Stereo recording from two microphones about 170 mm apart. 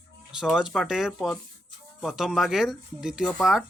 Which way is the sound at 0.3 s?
5° right (ahead or behind).